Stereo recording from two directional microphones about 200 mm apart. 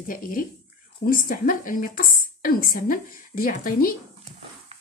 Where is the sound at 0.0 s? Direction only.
45° left (ahead or behind).